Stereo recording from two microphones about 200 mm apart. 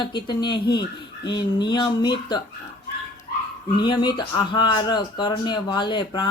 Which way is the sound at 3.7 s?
25° left (ahead or behind).